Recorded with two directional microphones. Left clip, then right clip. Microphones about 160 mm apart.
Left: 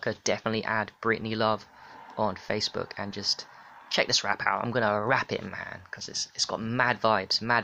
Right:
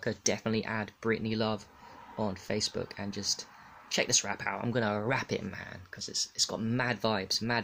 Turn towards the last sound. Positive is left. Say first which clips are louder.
# left 6 dB
turn(degrees=-15)  # may be behind; listen again after turning